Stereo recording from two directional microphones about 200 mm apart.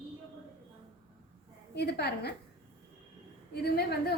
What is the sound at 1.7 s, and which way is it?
Speech, 55° left (ahead or behind).